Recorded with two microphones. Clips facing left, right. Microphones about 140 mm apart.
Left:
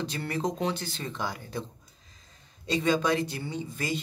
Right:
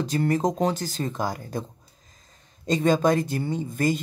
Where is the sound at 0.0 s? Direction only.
45° right (ahead or behind).